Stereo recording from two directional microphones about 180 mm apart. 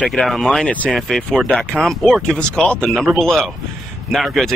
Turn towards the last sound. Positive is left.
turn(degrees=0)  # may be behind; listen again after turning